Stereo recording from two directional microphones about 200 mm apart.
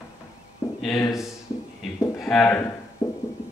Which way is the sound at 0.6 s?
15° left (ahead or behind).